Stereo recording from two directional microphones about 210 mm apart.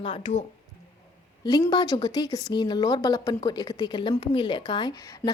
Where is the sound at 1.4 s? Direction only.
20° left (ahead or behind).